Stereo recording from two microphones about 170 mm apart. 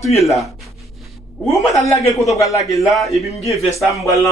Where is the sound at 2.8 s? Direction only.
Centre (ahead or behind).